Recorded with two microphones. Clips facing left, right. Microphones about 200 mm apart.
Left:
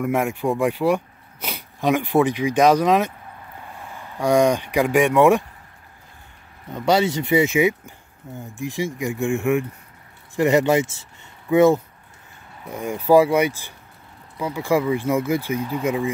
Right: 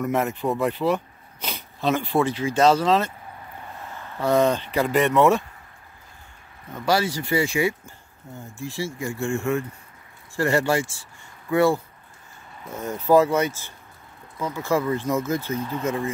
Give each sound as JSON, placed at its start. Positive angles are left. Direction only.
{"t": 0.0, "sound": "speech", "side_deg": 10}
{"t": 6.7, "sound": "speech", "side_deg": 20}